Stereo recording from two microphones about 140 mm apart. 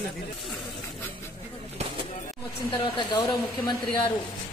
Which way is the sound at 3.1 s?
30° left (ahead or behind).